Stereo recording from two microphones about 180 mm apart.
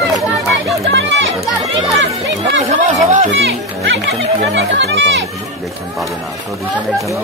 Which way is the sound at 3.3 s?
80° right.